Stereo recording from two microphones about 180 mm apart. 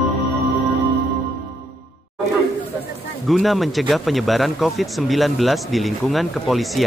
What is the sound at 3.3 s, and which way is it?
Speech, centre (ahead or behind).